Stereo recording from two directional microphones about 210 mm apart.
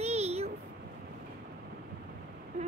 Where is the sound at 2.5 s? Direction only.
30° right (ahead or behind).